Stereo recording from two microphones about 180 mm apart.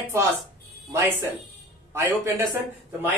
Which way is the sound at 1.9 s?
15° right (ahead or behind).